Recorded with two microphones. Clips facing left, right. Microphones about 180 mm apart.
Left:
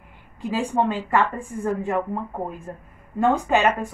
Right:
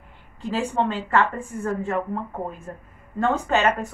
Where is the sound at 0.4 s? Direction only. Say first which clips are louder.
Left 1 dB; 15° left (ahead or behind).